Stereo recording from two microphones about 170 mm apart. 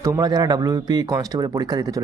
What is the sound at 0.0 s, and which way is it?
Speech, 20° right (ahead or behind).